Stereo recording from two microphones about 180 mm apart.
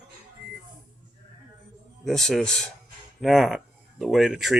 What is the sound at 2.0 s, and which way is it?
Speech, centre (ahead or behind).